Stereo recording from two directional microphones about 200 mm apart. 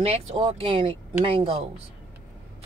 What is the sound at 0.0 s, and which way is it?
Speech, 30° right (ahead or behind).